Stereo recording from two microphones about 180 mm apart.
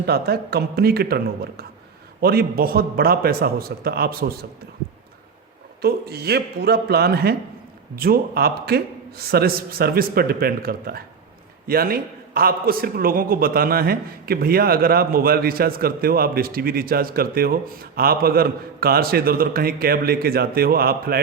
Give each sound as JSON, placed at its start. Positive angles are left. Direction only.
{"t": 0.0, "sound": "a man's voice", "side_deg": -60}
{"t": 5.8, "sound": "a man's voice", "side_deg": -60}